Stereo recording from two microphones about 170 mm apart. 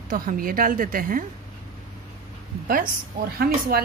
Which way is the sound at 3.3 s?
65° right (ahead or behind).